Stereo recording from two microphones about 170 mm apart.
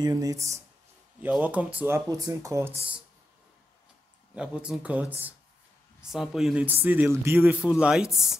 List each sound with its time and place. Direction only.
0.0 s a man's voice: 20° right (ahead or behind)
4.4 s a man's voice: 5° right (ahead or behind)